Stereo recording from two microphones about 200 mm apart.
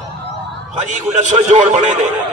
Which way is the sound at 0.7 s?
35° right (ahead or behind).